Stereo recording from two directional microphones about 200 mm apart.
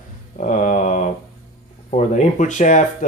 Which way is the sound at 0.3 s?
35° left (ahead or behind).